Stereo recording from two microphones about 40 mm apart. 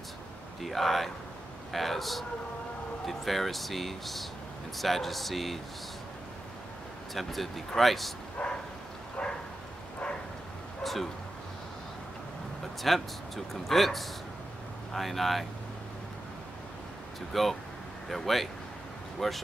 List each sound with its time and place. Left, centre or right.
0.6 s speech: centre
7.2 s speech: centre
8.4 s a sound: left
9.2 s bow-wow: left
10.8 s a sound: centre
12.9 s speech: centre
17.3 s speech: centre